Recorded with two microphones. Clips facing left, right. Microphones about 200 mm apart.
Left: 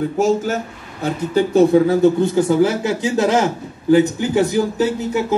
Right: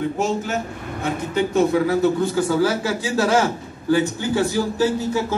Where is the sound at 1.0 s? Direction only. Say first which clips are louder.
Left 4 dB; 35° left (ahead or behind).